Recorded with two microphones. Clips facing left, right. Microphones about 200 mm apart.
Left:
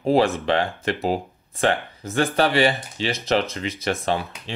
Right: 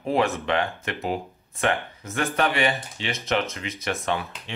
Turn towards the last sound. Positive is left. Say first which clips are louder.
# left 3 dB
turn(degrees=30)  # may be behind; listen again after turning